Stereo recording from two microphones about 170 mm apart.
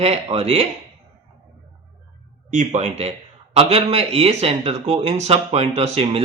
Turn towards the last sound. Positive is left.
turn(degrees=-35)  # may be behind; listen again after turning